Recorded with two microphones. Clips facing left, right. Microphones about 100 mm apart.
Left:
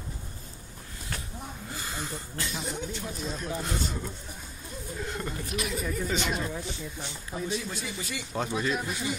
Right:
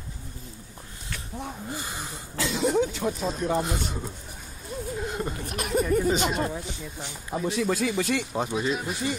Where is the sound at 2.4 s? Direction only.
90° right.